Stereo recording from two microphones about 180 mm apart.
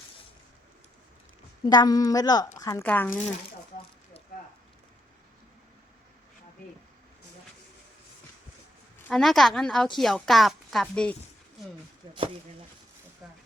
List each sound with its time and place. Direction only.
1.6 s a woman's voice: 20° left (ahead or behind)
9.0 s a woman's voice: centre (ahead or behind)
12.0 s speech: 25° right (ahead or behind)
13.2 s a sound: 5° right (ahead or behind)